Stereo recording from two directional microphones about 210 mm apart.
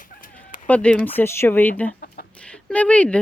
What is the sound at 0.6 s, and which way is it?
Speech, 5° left (ahead or behind).